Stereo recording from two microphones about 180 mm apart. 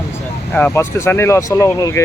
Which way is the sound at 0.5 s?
10° left (ahead or behind).